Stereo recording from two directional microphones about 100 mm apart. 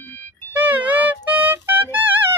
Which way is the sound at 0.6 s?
15° right (ahead or behind).